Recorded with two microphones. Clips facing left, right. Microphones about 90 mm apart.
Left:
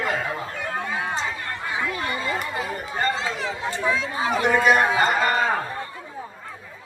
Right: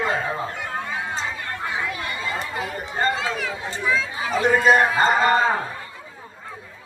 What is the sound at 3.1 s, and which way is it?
Speech, 25° left (ahead or behind).